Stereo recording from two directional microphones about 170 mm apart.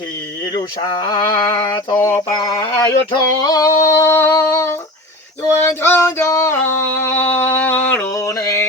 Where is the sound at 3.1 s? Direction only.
20° left (ahead or behind).